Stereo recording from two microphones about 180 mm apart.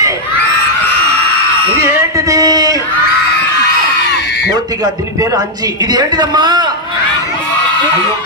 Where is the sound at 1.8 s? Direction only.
15° right (ahead or behind).